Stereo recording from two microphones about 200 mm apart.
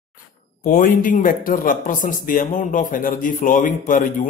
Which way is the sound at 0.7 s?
45° left (ahead or behind).